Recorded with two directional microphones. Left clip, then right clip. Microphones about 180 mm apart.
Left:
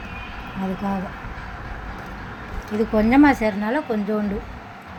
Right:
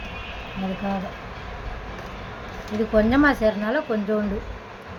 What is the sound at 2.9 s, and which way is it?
Speech, 10° left (ahead or behind).